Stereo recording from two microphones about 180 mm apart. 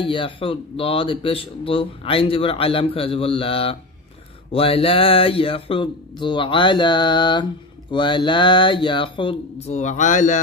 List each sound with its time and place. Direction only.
0.0 s speech: 30° left (ahead or behind)
9.7 s speech: 40° left (ahead or behind)